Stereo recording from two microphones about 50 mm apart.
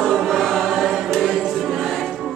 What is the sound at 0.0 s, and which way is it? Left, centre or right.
Choir, centre.